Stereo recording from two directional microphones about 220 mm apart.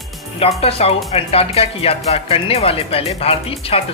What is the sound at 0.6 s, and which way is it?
Speech, 25° left (ahead or behind).